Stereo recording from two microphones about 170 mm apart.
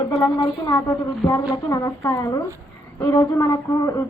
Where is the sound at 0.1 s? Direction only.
25° left (ahead or behind).